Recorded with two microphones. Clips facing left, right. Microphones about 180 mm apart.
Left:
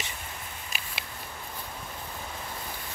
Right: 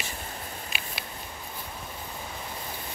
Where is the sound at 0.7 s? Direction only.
40° left (ahead or behind).